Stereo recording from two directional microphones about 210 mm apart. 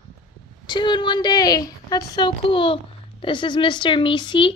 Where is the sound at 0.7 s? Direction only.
20° left (ahead or behind).